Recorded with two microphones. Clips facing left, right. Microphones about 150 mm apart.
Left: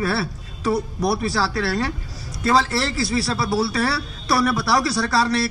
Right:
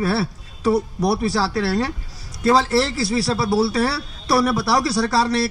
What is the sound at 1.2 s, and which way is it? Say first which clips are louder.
A man's voice: right 2 dB; 30° right (ahead or behind).